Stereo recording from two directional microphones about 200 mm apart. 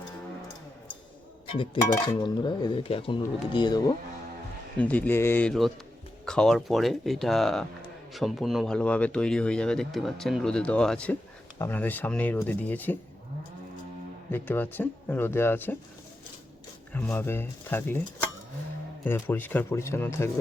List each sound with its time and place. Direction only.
1.5 s speech: 25° left (ahead or behind)
4.8 s speech: 5° left (ahead or behind)
14.3 s speech: 10° left (ahead or behind)
16.9 s speech: 10° left (ahead or behind)
19.0 s speech: 10° left (ahead or behind)